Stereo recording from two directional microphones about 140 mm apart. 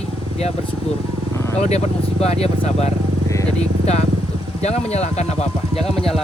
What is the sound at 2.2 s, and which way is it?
Speech, 45° left (ahead or behind).